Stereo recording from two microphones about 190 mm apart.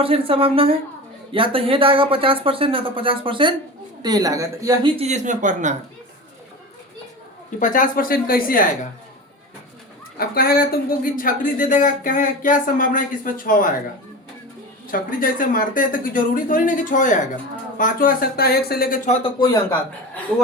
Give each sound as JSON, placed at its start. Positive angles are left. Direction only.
{"t": 0.0, "sound": "speech", "side_deg": -30}
{"t": 7.6, "sound": "speech", "side_deg": 45}
{"t": 10.2, "sound": "speech", "side_deg": 50}
{"t": 14.8, "sound": "speech", "side_deg": 45}
{"t": 19.0, "sound": "speech", "side_deg": 35}
{"t": 19.4, "sound": "speech", "side_deg": 20}